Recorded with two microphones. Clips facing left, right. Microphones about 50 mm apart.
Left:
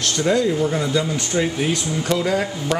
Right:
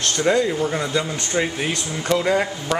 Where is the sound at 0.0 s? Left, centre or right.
Centre.